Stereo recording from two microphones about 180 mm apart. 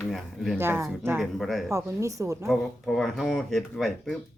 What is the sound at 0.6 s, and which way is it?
Speech, 10° right (ahead or behind).